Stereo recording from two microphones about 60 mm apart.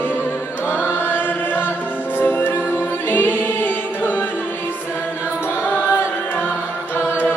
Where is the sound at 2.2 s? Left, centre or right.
Left.